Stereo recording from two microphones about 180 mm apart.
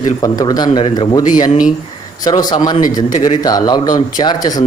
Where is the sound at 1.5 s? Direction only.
45° left (ahead or behind).